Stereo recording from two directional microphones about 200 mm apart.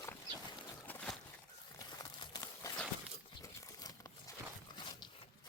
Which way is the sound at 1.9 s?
20° left (ahead or behind).